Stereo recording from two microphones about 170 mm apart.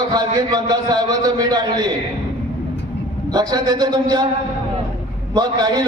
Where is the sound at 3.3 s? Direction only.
25° right (ahead or behind).